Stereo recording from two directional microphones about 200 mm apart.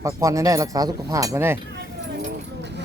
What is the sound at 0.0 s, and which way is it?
Speech, 15° right (ahead or behind).